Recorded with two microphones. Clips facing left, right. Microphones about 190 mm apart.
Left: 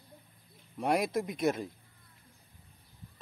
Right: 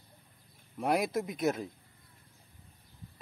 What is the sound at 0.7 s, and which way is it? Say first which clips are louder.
Speech: even; centre (ahead or behind).